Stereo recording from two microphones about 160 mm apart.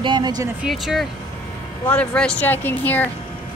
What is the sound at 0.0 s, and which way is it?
Speech, 25° right (ahead or behind).